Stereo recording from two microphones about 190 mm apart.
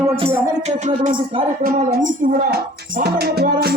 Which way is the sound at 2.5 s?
55° right (ahead or behind).